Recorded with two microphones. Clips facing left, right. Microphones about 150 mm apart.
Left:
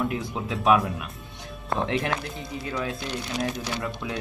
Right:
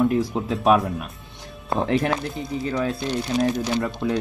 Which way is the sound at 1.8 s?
35° right (ahead or behind).